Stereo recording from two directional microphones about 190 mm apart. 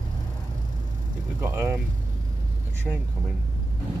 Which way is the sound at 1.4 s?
15° right (ahead or behind).